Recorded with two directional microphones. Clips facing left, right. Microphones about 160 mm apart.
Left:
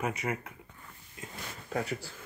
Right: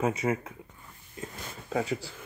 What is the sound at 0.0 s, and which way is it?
Speech, 25° right (ahead or behind).